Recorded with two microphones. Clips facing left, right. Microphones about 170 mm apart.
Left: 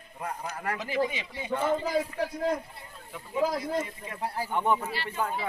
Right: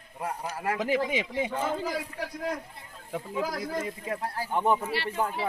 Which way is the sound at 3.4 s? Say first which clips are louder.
Left 7 dB; 25° left (ahead or behind).